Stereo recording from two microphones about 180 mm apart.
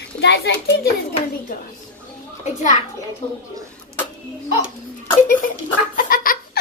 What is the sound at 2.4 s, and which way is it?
Speech, 40° left (ahead or behind).